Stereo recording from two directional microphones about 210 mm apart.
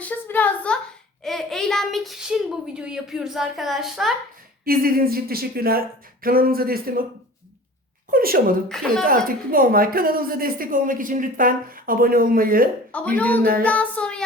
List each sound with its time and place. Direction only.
0.0 s a sound: 10° left (ahead or behind)
4.6 s speech: 45° right (ahead or behind)
8.1 s speech: 45° right (ahead or behind)
8.7 s child singing: centre (ahead or behind)
9.0 s speech: 40° right (ahead or behind)
12.9 s a woman's voice: 5° left (ahead or behind)
13.4 s speech: 45° right (ahead or behind)
13.7 s child singing: 5° left (ahead or behind)